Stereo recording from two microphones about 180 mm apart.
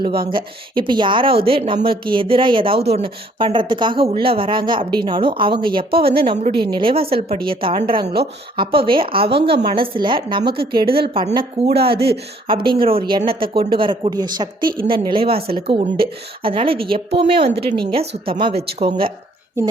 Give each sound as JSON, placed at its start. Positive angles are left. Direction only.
{"t": 0.3, "sound": "a woman's voice", "side_deg": -25}
{"t": 9.3, "sound": "speech", "side_deg": -65}
{"t": 9.6, "sound": "a woman's voice", "side_deg": -30}